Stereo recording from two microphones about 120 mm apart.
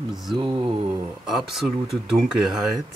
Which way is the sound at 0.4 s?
40° right (ahead or behind).